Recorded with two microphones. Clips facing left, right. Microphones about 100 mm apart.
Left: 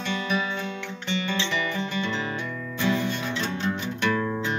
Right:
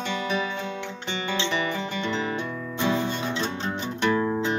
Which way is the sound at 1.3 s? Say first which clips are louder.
Right 4 dB; 30° right (ahead or behind).